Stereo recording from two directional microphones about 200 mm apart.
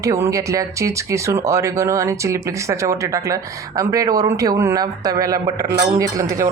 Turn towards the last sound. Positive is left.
turn(degrees=-15)  # may be behind; listen again after turning